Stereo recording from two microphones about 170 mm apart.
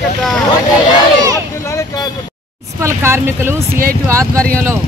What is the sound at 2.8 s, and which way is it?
Speech, 15° right (ahead or behind).